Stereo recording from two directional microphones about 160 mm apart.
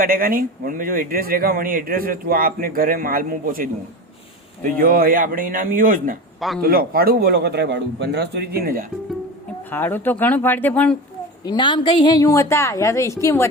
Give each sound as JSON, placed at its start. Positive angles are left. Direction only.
{"t": 0.0, "sound": "a man's voice", "side_deg": -60}
{"t": 6.6, "sound": "a man's voice", "side_deg": -70}
{"t": 9.6, "sound": "speech", "side_deg": 10}
{"t": 11.4, "sound": "a woman's voice", "side_deg": 30}